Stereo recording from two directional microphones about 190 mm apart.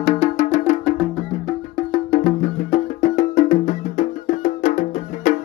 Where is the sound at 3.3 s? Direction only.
40° left (ahead or behind).